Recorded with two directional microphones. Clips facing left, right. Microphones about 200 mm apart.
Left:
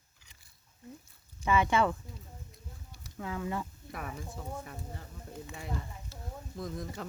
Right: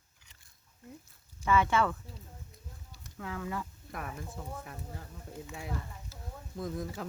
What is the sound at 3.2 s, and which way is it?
Speech, 25° left (ahead or behind).